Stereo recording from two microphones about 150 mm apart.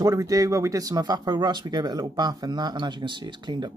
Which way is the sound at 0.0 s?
20° right (ahead or behind).